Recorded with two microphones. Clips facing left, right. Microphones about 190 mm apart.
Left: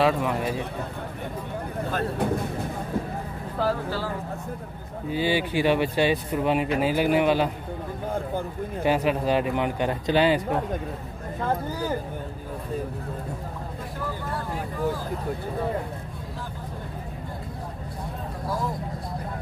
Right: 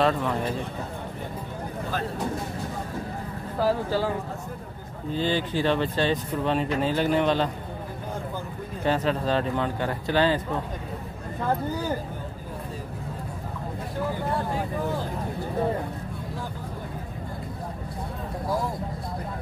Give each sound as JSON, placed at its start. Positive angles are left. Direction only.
{"t": 0.0, "sound": "speech", "side_deg": 5}
{"t": 1.9, "sound": "speech", "side_deg": 55}
{"t": 5.1, "sound": "speech", "side_deg": 10}
{"t": 8.8, "sound": "speech", "side_deg": 10}